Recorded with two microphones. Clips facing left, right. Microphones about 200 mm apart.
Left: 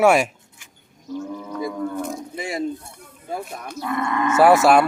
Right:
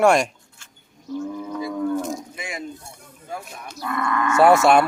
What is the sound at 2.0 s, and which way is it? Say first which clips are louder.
Cattle: even; 60° left (ahead or behind).